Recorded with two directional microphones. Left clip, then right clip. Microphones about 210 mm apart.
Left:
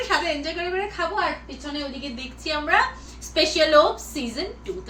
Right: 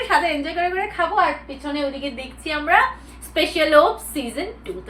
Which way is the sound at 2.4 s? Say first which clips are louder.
Right 4 dB; 15° left (ahead or behind).